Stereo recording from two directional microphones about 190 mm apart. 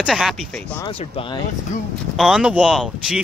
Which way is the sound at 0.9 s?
30° left (ahead or behind).